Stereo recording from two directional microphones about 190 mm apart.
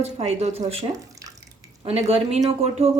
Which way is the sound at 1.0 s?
15° right (ahead or behind).